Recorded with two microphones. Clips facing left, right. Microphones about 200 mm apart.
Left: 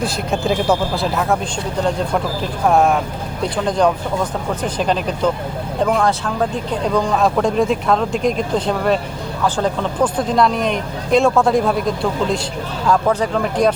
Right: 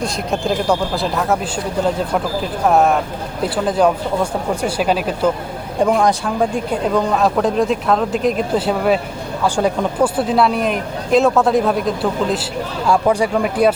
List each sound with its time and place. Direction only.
0.0 s speech: centre (ahead or behind)
2.4 s speech: centre (ahead or behind)